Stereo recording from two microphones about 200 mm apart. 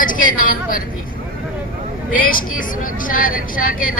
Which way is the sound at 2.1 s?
45° left (ahead or behind).